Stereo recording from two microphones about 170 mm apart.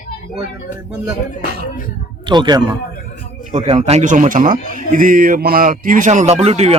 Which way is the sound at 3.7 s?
35° right (ahead or behind).